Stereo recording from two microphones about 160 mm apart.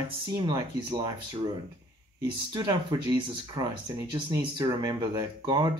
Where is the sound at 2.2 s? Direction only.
25° right (ahead or behind).